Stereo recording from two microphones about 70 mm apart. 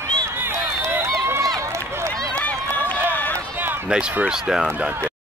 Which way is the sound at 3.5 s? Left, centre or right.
Right.